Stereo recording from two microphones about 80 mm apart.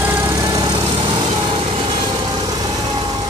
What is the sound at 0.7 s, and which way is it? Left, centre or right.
Vehicle, right.